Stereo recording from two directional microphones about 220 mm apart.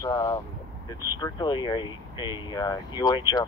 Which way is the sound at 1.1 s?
20° left (ahead or behind).